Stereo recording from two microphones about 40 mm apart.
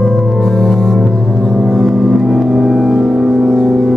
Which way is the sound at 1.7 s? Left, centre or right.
Centre.